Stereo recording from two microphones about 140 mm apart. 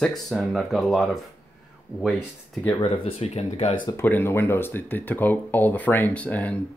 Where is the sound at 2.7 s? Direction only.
40° left (ahead or behind).